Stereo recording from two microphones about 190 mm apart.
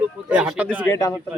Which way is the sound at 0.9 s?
15° left (ahead or behind).